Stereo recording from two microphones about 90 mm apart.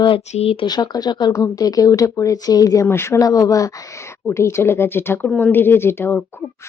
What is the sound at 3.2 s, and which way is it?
Speech, 40° left (ahead or behind).